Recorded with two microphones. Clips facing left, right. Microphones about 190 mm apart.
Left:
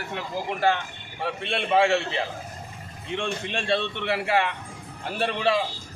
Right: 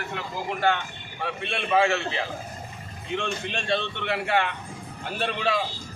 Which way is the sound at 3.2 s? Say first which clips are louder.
Left 4 dB; 30° left (ahead or behind).